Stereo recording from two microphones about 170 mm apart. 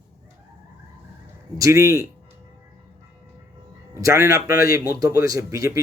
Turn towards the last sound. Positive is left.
turn(degrees=-20)  # may be behind; listen again after turning